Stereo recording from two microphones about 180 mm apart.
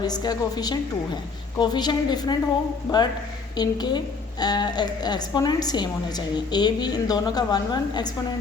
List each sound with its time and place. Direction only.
0.0 s a woman's voice: 20° left (ahead or behind)